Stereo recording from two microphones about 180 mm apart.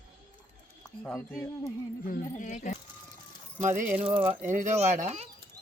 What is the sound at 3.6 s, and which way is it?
Speech, 45° right (ahead or behind).